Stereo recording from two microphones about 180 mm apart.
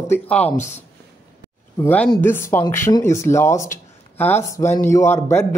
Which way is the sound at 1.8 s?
10° left (ahead or behind).